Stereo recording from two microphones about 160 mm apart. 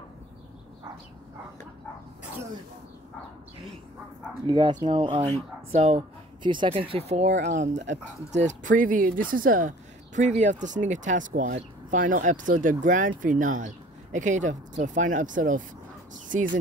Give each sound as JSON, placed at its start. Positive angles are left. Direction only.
{"t": 4.5, "sound": "speech", "side_deg": -30}
{"t": 5.7, "sound": "speech", "side_deg": -45}
{"t": 6.4, "sound": "speech", "side_deg": -30}
{"t": 7.3, "sound": "speech", "side_deg": -90}
{"t": 8.3, "sound": "speech", "side_deg": -50}